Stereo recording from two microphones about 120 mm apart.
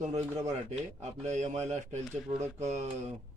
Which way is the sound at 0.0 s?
70° right (ahead or behind).